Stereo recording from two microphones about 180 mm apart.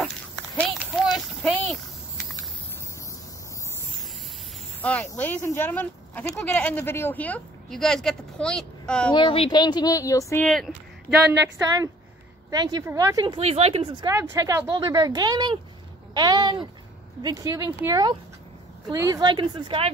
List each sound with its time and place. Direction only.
0.6 s a sound: centre (ahead or behind)
4.8 s speech: 10° left (ahead or behind)
9.1 s speech: 30° left (ahead or behind)
10.4 s speech: centre (ahead or behind)
12.4 s speech: 20° right (ahead or behind)
13.4 s speech: 35° right (ahead or behind)
14.0 s speech: 15° right (ahead or behind)